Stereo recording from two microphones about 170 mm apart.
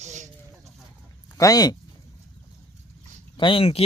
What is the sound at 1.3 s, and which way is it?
Speech, 20° left (ahead or behind).